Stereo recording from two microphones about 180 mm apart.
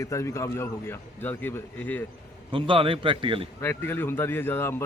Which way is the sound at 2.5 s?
30° right (ahead or behind).